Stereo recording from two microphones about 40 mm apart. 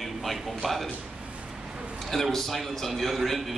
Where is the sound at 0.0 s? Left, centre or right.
Centre.